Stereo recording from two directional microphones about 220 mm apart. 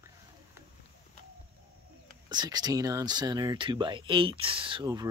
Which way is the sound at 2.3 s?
20° right (ahead or behind).